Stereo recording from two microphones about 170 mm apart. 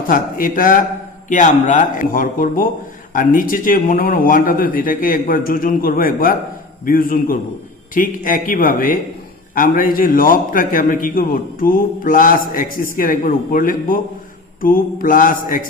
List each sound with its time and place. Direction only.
0.1 s a man's voice: 55° left (ahead or behind)